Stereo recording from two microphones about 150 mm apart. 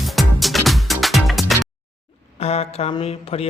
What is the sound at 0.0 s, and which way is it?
Music, centre (ahead or behind).